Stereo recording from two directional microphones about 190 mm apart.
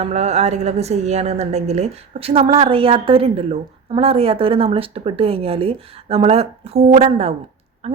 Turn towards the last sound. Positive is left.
turn(degrees=-35)  # may be behind; listen again after turning